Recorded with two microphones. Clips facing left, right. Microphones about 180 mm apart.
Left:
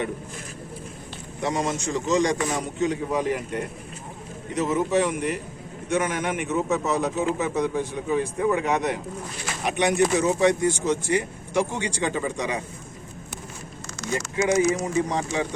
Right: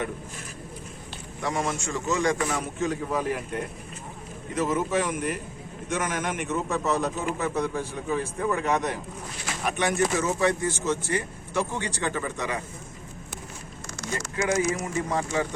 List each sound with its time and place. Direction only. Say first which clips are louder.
1.4 s speech: left 3 dB; 20° left (ahead or behind)
4.5 s speech: left 3 dB; 15° left (ahead or behind)
14.0 s speech: left 4 dB; 20° left (ahead or behind)